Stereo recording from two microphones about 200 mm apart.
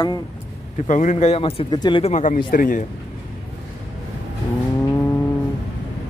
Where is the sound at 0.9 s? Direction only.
40° left (ahead or behind).